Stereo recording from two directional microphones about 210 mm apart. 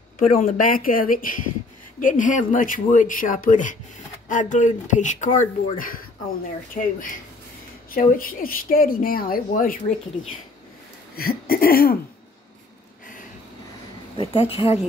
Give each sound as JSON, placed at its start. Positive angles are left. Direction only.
{"t": 0.4, "sound": "speech", "side_deg": 40}
{"t": 11.1, "sound": "speech", "side_deg": 45}
{"t": 14.1, "sound": "a woman's voice", "side_deg": 25}